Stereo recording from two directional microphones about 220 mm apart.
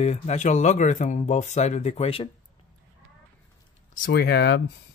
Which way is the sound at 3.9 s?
40° left (ahead or behind).